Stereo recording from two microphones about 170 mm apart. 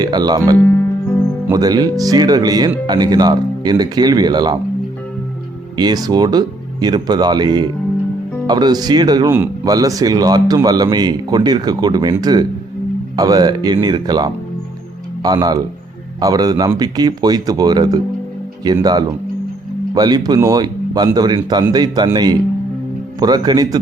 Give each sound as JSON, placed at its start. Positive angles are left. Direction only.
{"t": 0.0, "sound": "speech", "side_deg": -25}
{"t": 5.7, "sound": "speech", "side_deg": -25}